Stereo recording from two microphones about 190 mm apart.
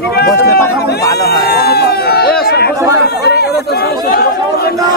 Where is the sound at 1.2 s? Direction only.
55° left (ahead or behind).